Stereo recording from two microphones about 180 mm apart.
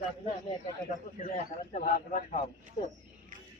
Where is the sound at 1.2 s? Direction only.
50° left (ahead or behind).